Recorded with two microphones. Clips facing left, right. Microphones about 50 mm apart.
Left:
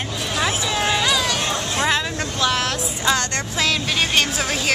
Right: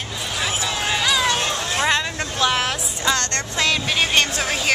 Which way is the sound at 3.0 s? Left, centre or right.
Centre.